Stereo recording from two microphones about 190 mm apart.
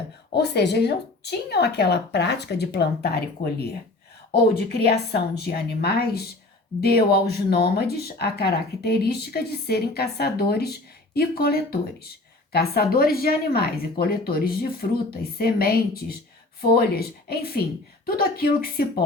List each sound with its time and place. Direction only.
0.3 s speech: 60° left (ahead or behind)